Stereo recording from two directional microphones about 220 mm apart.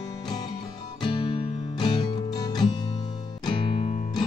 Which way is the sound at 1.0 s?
20° left (ahead or behind).